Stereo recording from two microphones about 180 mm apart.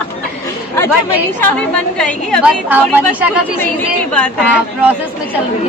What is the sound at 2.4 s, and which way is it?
Speech, 10° right (ahead or behind).